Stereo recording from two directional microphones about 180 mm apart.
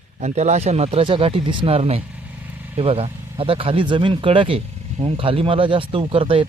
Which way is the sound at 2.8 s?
30° right (ahead or behind).